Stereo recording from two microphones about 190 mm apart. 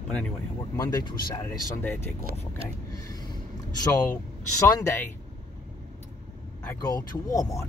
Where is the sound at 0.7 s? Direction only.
15° left (ahead or behind).